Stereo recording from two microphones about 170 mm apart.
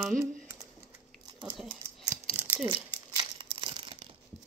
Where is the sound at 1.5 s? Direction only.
Centre (ahead or behind).